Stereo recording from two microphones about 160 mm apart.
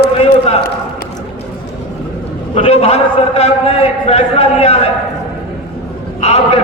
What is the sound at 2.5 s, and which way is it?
A man's voice, 40° left (ahead or behind).